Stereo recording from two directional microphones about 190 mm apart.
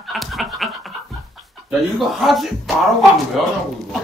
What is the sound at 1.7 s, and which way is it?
Speech, centre (ahead or behind).